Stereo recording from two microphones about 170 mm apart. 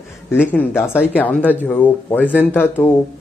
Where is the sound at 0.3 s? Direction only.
10° left (ahead or behind).